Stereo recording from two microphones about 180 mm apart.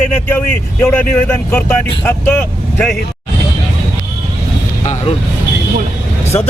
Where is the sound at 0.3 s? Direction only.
10° left (ahead or behind).